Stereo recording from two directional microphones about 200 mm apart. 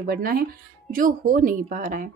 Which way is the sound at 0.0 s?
45° right (ahead or behind).